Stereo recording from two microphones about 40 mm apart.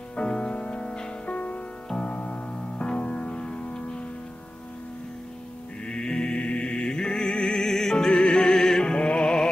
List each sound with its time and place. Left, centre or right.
0.1 s music: left
1.2 s music: left
5.9 s music: centre